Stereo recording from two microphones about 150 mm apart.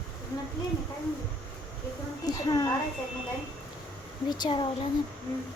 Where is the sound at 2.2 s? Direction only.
25° left (ahead or behind).